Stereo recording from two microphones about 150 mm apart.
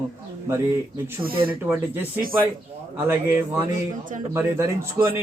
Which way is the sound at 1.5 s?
10° right (ahead or behind).